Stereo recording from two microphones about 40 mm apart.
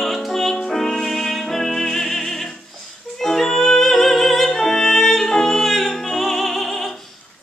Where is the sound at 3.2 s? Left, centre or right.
Centre.